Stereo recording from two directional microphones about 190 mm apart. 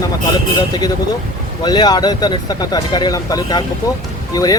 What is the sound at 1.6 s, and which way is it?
Speech, 20° left (ahead or behind).